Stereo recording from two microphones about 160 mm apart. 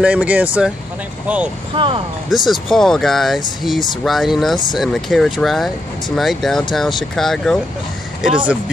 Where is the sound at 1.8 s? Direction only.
35° right (ahead or behind).